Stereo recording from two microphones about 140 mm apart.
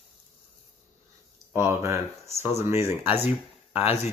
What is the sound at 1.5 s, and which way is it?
Speech, 20° right (ahead or behind).